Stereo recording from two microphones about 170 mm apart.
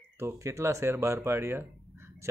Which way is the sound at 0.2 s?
15° right (ahead or behind).